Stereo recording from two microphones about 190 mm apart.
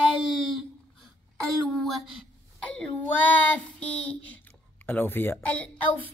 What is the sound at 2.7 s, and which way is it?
A child's voice, 10° left (ahead or behind).